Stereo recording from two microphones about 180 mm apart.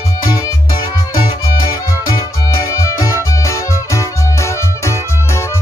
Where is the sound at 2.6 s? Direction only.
15° left (ahead or behind).